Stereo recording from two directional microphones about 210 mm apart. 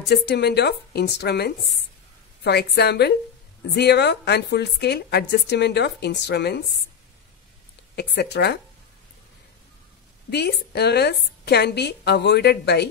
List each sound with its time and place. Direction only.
0.1 s a woman's voice: 50° left (ahead or behind)
7.9 s a woman's voice: 50° left (ahead or behind)
10.3 s a woman's voice: 50° left (ahead or behind)